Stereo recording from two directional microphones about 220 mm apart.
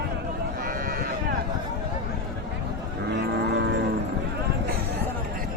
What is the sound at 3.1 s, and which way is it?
Music, 50° right (ahead or behind).